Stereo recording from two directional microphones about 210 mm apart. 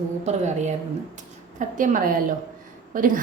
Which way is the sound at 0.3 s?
35° right (ahead or behind).